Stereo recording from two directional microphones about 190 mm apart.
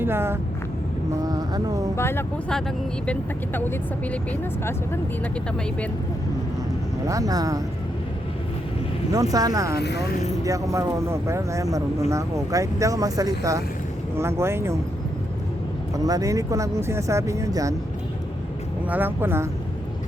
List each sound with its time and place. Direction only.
0.0 s speech: 10° right (ahead or behind)
2.0 s speech: 10° left (ahead or behind)
7.1 s speech: 20° right (ahead or behind)
9.3 s speech: 20° right (ahead or behind)
9.7 s speech: 60° left (ahead or behind)
10.4 s speech: 15° right (ahead or behind)
16.0 s speech: 20° right (ahead or behind)
18.9 s speech: 10° right (ahead or behind)